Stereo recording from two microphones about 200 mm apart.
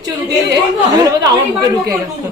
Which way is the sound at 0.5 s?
20° right (ahead or behind).